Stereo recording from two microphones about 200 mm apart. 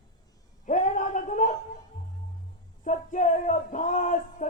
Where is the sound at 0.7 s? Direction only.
40° left (ahead or behind).